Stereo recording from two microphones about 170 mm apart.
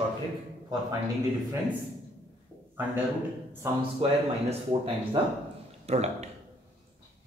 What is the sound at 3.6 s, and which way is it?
Speech, 20° right (ahead or behind).